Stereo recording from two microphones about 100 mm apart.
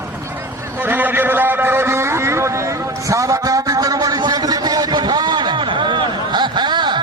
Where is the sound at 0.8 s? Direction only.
20° right (ahead or behind).